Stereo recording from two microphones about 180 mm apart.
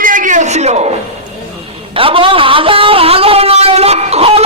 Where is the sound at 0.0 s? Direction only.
45° right (ahead or behind).